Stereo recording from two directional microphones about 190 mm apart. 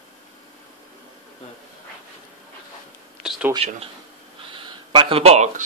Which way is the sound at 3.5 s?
30° right (ahead or behind).